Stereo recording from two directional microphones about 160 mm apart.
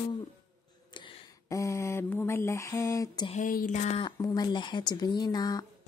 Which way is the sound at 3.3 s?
55° left (ahead or behind).